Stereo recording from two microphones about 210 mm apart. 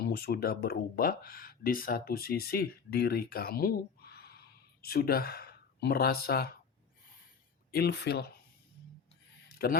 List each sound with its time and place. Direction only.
0.0 s speech: 45° left (ahead or behind)
7.7 s speech: 50° left (ahead or behind)
9.5 s a sound: 45° left (ahead or behind)